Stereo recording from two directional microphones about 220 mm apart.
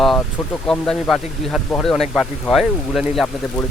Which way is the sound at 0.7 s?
Centre (ahead or behind).